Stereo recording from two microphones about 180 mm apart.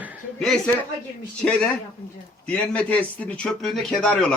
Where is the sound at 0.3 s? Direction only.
5° left (ahead or behind).